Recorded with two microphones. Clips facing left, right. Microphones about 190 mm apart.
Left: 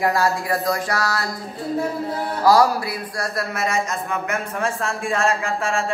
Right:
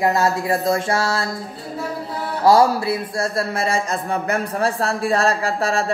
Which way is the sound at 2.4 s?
25° right (ahead or behind).